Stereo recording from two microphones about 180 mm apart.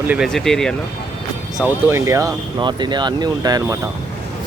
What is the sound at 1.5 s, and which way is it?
Speech, 10° right (ahead or behind).